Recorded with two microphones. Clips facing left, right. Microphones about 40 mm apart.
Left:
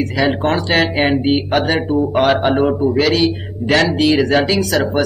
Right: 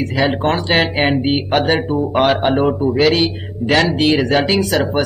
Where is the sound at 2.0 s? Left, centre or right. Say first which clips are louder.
Left 3 dB; centre.